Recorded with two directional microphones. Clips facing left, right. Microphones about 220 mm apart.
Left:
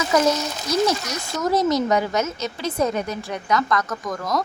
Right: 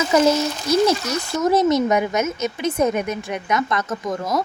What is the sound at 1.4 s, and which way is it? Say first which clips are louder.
A woman's voice: right 3 dB; 25° right (ahead or behind).